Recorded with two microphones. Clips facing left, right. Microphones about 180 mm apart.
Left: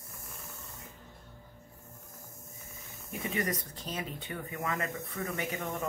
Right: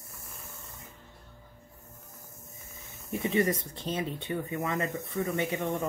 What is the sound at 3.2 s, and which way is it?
Speech, 30° right (ahead or behind).